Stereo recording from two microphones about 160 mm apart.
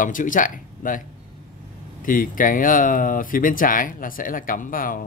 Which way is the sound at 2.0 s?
60° left (ahead or behind).